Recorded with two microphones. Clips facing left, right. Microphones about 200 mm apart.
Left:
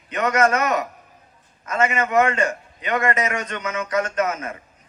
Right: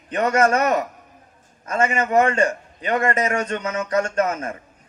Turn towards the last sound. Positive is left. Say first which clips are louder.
# right 2 dB
turn(degrees=-30)  # may be behind; listen again after turning